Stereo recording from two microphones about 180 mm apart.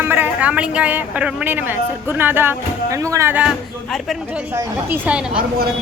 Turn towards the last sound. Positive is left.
turn(degrees=-5)  # may be behind; listen again after turning